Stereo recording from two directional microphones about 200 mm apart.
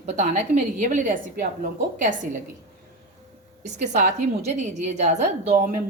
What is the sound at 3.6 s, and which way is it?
A woman's voice, 35° right (ahead or behind).